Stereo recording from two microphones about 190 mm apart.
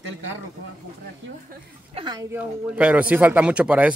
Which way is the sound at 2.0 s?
20° right (ahead or behind).